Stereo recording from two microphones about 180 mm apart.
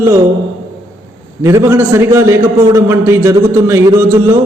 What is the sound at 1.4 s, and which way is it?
A man's voice, 15° right (ahead or behind).